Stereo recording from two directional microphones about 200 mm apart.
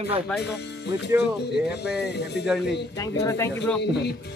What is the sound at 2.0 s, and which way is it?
Speech, 55° left (ahead or behind).